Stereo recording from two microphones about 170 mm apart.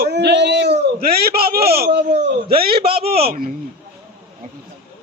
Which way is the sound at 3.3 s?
60° right (ahead or behind).